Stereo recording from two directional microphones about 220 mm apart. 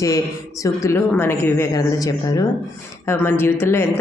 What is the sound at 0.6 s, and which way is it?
Speech, 15° left (ahead or behind).